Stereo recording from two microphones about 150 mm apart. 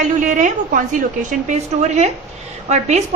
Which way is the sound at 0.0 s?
55° right (ahead or behind).